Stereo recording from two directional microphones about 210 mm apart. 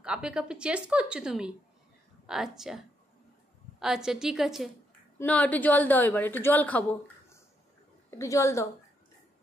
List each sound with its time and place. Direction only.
0.0 s a woman's voice: 5° right (ahead or behind)
3.8 s a woman's voice: centre (ahead or behind)
8.2 s a woman's voice: 15° left (ahead or behind)